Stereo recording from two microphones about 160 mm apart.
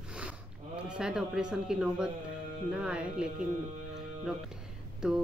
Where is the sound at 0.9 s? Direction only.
5° right (ahead or behind).